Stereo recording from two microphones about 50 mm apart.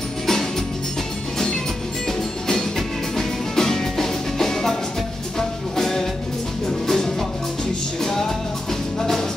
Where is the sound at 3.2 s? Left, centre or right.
Centre.